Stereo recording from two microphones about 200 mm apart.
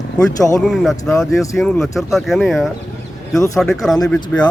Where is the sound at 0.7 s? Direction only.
Centre (ahead or behind).